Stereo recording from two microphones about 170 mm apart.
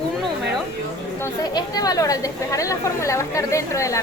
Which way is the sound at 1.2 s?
20° left (ahead or behind).